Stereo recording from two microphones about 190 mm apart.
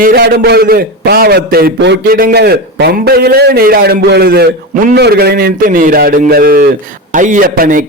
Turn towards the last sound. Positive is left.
turn(degrees=-45)  # may be behind; listen again after turning